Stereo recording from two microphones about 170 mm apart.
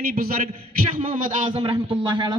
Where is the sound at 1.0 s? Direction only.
45° right (ahead or behind).